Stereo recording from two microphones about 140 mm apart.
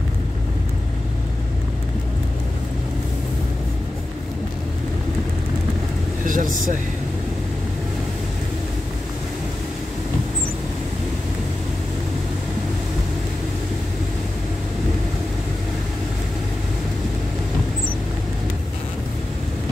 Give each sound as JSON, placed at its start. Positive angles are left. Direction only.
{"t": 6.2, "sound": "vehicle", "side_deg": -75}